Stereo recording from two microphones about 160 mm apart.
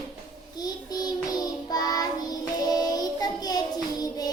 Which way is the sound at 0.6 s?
25° left (ahead or behind).